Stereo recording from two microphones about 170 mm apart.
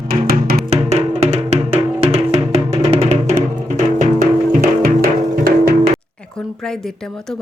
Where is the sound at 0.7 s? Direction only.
40° right (ahead or behind).